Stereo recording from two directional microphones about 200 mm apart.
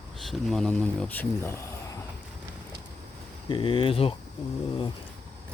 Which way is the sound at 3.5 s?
25° left (ahead or behind).